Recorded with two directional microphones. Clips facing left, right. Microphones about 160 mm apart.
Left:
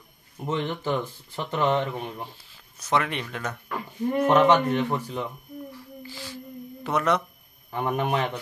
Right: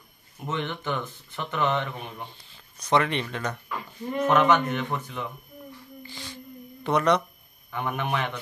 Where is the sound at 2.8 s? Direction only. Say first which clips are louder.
Right 2 dB; 5° left (ahead or behind).